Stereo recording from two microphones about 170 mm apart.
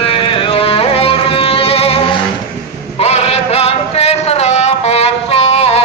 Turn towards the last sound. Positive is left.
turn(degrees=35)  # may be behind; listen again after turning